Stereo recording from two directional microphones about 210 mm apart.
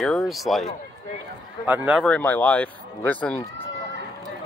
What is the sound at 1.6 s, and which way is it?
Speech, 5° right (ahead or behind).